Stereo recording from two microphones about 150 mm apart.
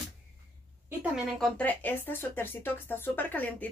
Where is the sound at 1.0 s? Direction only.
Centre (ahead or behind).